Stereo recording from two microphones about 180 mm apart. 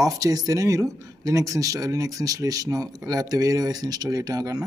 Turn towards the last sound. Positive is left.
turn(degrees=-20)  # may be behind; listen again after turning